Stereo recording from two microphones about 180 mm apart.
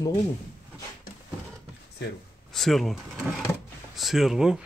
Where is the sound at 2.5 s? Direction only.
Centre (ahead or behind).